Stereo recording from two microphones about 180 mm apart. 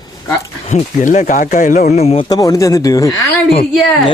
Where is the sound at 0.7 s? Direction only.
45° left (ahead or behind).